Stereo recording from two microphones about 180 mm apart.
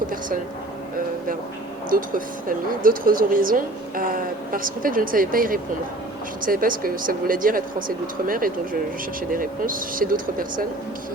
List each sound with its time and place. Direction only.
1.9 s speech: 50° right (ahead or behind)